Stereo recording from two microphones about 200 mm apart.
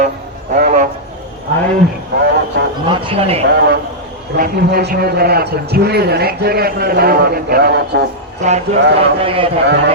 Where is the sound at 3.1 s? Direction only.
30° right (ahead or behind).